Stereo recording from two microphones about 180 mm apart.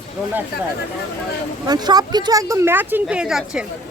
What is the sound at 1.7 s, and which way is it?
A woman's voice, 20° right (ahead or behind).